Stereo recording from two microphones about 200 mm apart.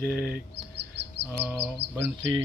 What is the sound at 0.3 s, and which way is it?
Speech, 55° right (ahead or behind).